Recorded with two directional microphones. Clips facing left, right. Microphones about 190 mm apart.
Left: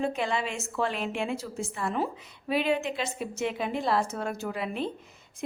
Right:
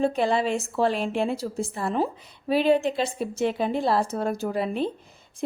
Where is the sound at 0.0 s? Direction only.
35° right (ahead or behind).